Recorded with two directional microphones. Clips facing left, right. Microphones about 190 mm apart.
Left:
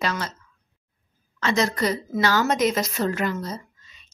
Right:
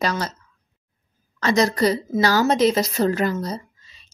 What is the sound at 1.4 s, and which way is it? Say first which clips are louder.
Speech: right 4 dB; 35° right (ahead or behind).